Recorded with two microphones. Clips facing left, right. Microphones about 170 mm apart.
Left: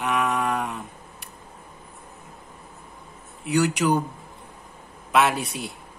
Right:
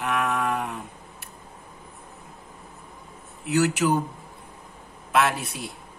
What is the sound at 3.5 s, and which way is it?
Speech, centre (ahead or behind).